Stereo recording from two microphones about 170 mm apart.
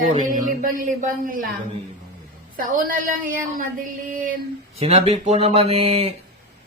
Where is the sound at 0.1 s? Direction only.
50° right (ahead or behind).